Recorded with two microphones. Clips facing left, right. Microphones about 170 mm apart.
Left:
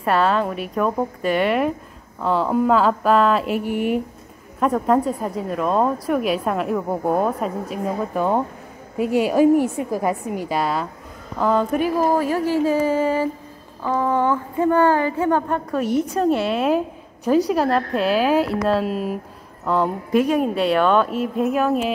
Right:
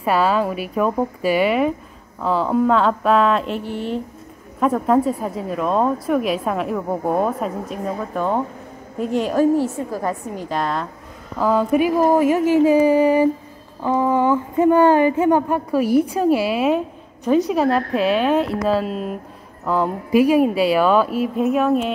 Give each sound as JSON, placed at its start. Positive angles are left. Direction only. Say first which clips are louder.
{"t": 0.0, "sound": "a woman's voice", "louder": "right 1 dB", "side_deg": -5}
{"t": 4.6, "sound": "a woman's voice", "louder": "right 1 dB", "side_deg": 0}
{"t": 11.3, "sound": "a woman's voice", "louder": "right 2 dB", "side_deg": -5}